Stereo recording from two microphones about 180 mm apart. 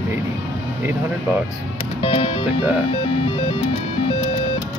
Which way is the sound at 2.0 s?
30° left (ahead or behind).